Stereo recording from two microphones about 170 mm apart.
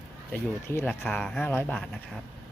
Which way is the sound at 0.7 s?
10° left (ahead or behind).